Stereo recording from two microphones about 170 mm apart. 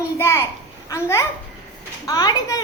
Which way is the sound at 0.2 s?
15° left (ahead or behind).